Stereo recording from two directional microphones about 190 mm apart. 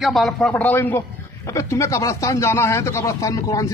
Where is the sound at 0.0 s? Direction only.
Centre (ahead or behind).